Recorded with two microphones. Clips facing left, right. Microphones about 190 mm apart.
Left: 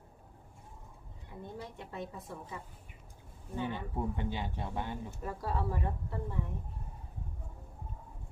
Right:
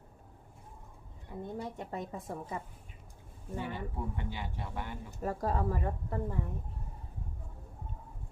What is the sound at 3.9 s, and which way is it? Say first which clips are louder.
A man's voice: left 3 dB; 20° left (ahead or behind).